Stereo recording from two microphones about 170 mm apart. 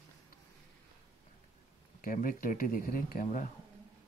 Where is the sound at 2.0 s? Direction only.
55° left (ahead or behind).